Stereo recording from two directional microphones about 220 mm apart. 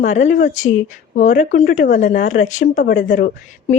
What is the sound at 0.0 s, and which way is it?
Speech, 35° left (ahead or behind).